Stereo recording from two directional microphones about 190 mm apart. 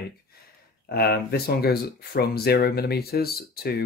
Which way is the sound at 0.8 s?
55° left (ahead or behind).